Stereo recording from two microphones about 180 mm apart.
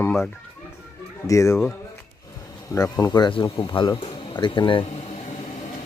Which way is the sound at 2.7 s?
20° left (ahead or behind).